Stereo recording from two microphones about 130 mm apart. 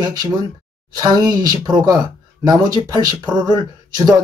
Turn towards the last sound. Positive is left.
turn(degrees=-30)  # may be behind; listen again after turning